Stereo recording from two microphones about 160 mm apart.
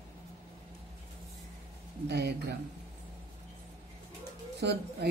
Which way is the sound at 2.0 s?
90° right.